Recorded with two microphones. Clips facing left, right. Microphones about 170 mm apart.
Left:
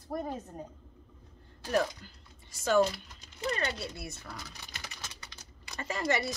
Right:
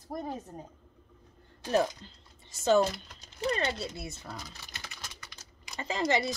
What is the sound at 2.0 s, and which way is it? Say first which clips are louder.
Speech: right 2 dB; 25° right (ahead or behind).